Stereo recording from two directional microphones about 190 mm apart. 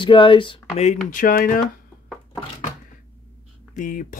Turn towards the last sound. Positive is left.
turn(degrees=45)  # may be behind; listen again after turning